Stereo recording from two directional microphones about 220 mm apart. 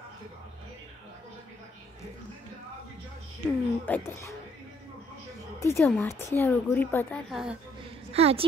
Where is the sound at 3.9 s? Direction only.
10° left (ahead or behind).